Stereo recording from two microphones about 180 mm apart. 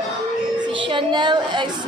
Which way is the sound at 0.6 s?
25° right (ahead or behind).